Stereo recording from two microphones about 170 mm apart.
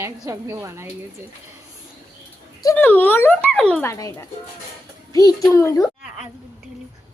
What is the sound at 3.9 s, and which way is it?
A child's voice, 15° left (ahead or behind).